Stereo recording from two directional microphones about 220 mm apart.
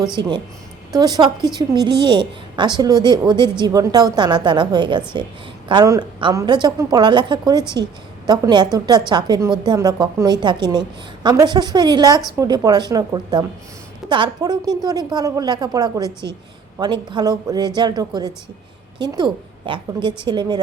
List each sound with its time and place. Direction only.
0.2 s a woman's voice: 20° right (ahead or behind)